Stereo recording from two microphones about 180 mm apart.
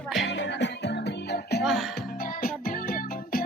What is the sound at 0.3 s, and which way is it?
Music, 75° left (ahead or behind).